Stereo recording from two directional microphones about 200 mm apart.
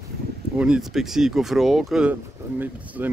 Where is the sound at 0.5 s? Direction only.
5° right (ahead or behind).